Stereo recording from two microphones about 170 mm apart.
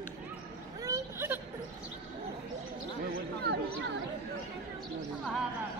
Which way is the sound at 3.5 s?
75° right (ahead or behind).